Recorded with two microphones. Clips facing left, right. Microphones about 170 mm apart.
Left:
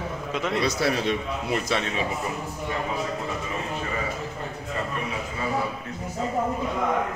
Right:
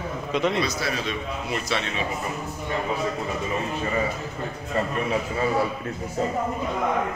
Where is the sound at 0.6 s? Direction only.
65° left (ahead or behind).